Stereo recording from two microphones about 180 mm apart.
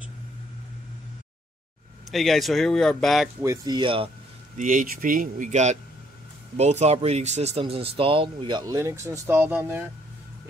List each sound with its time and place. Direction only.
2.0 s speech: centre (ahead or behind)
3.3 s speech: 20° right (ahead or behind)
4.6 s speech: 45° right (ahead or behind); by 9.8 s 10° right (ahead or behind)